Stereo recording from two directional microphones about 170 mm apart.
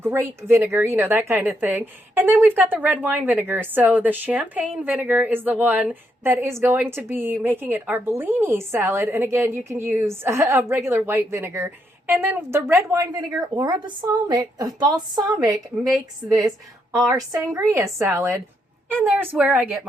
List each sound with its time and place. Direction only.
0.0 s a woman's voice: 15° right (ahead or behind)
15.7 s a woman's voice: centre (ahead or behind)
17.1 s a woman's voice: 20° right (ahead or behind)